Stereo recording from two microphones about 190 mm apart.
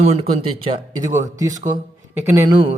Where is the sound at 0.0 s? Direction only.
30° right (ahead or behind).